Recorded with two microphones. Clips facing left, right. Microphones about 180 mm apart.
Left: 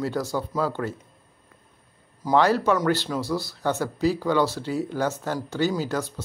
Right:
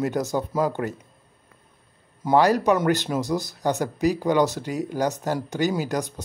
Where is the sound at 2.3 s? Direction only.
15° right (ahead or behind).